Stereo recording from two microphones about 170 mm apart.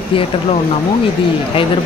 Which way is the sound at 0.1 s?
30° left (ahead or behind).